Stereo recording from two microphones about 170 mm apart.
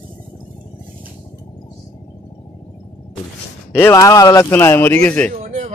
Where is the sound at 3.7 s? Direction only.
15° left (ahead or behind).